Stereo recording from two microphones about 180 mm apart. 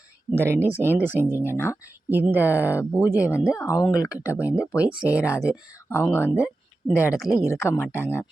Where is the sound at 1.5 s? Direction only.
15° left (ahead or behind).